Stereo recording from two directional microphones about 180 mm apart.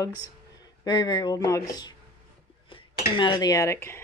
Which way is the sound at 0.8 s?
25° left (ahead or behind).